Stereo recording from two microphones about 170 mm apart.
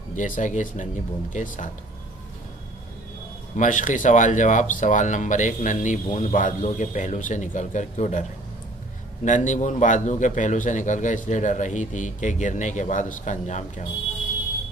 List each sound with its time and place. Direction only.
0.1 s speech: 50° left (ahead or behind)
3.5 s speech: 50° left (ahead or behind)